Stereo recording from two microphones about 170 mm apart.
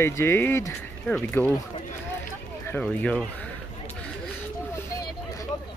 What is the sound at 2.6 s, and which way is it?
Speech, 10° left (ahead or behind).